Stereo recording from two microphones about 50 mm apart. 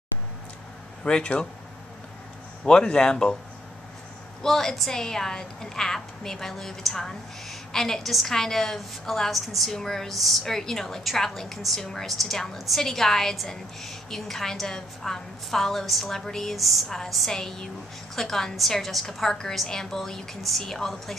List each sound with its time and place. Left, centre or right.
1.0 s speech: centre
2.6 s a woman's voice: centre
4.4 s a woman's voice: centre